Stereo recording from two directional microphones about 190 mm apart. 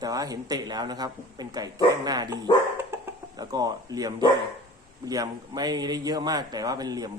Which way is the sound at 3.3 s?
20° right (ahead or behind).